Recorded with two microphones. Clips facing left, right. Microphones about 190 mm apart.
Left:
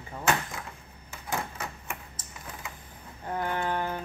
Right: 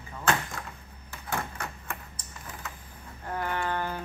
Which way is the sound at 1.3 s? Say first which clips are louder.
Even; 10° left (ahead or behind).